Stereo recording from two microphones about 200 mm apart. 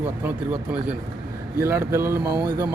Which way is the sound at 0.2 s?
10° right (ahead or behind).